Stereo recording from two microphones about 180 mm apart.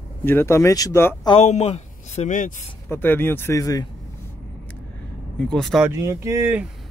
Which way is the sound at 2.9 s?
10° left (ahead or behind).